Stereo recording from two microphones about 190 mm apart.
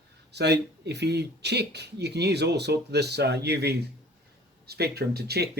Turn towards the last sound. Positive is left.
turn(degrees=-55)  # may be behind; listen again after turning